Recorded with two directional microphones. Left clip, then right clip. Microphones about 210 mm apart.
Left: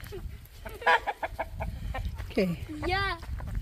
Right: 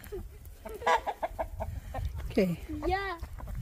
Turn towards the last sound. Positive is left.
turn(degrees=0)  # may be behind; listen again after turning